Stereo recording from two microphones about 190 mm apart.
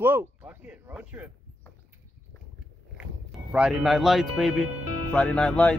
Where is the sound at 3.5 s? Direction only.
5° right (ahead or behind).